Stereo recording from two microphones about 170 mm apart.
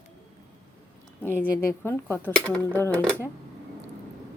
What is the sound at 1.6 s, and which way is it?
Speech, 15° left (ahead or behind).